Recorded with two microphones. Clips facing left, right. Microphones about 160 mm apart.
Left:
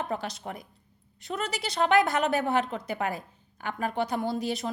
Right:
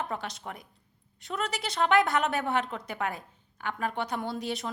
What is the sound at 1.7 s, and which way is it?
A woman's voice, 40° left (ahead or behind).